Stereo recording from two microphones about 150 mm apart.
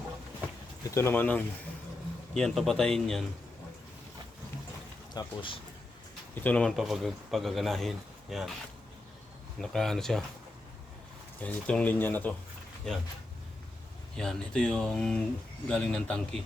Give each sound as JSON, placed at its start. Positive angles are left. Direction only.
{"t": 0.9, "sound": "speech", "side_deg": 20}
{"t": 5.1, "sound": "speech", "side_deg": 35}
{"t": 6.4, "sound": "speech", "side_deg": 10}
{"t": 9.6, "sound": "speech", "side_deg": 5}
{"t": 11.4, "sound": "speech", "side_deg": 10}
{"t": 14.2, "sound": "speech", "side_deg": 5}